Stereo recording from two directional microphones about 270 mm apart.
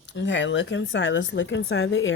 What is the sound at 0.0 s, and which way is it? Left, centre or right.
Speech, left.